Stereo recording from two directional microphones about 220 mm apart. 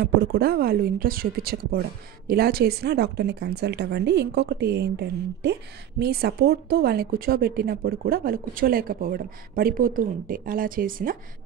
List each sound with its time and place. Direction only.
0.0 s speech: 45° right (ahead or behind)